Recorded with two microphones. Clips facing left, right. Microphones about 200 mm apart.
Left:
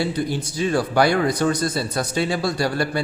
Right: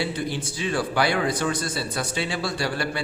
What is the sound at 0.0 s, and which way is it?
A man's voice, 45° left (ahead or behind).